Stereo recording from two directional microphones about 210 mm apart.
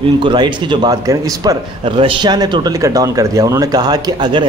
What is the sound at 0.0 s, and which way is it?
A man's voice, 25° right (ahead or behind).